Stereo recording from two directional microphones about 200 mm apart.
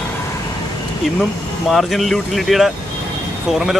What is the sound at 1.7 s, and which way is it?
Speech, centre (ahead or behind).